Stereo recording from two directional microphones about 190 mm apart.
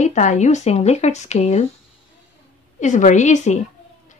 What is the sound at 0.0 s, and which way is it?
A woman's voice, 40° left (ahead or behind).